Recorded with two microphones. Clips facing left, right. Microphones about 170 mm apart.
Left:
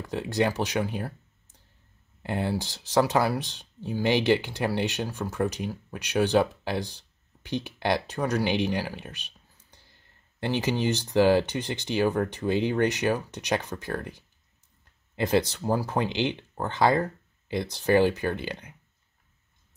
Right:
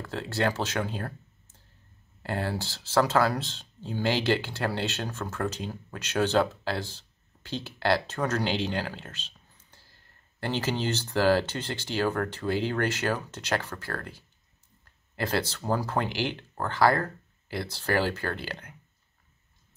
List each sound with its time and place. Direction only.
0.0 s speech: 15° left (ahead or behind)